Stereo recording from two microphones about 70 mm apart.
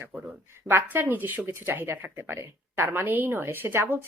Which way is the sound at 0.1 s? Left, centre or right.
Centre.